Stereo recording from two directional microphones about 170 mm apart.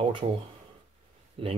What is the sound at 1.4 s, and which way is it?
Speech, 30° right (ahead or behind).